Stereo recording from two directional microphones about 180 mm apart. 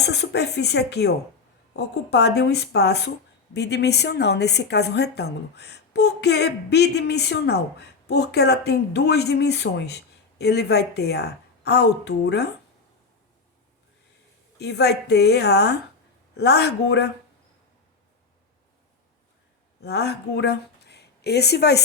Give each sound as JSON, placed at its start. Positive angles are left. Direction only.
{"t": 0.0, "sound": "a woman's voice", "side_deg": 65}
{"t": 14.6, "sound": "a woman's voice", "side_deg": 65}
{"t": 19.8, "sound": "speech", "side_deg": 65}